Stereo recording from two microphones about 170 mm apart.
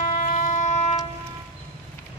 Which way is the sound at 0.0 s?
45° left (ahead or behind).